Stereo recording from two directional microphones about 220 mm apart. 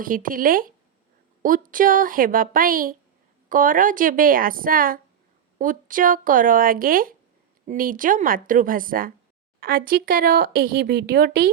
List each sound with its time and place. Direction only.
0.0 s speech: 40° right (ahead or behind)